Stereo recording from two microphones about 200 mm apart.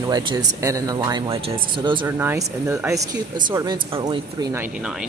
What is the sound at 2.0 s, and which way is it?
Speech, 10° right (ahead or behind).